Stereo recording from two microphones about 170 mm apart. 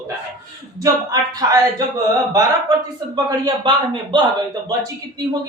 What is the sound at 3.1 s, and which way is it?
Speech, 25° right (ahead or behind).